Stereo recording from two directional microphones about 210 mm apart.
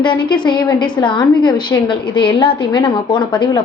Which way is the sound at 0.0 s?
20° left (ahead or behind).